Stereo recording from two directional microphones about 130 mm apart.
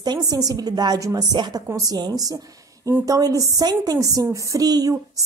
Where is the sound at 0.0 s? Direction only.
30° right (ahead or behind).